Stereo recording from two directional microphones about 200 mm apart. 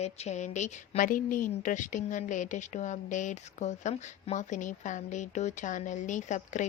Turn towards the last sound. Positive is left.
turn(degrees=40)  # may be behind; listen again after turning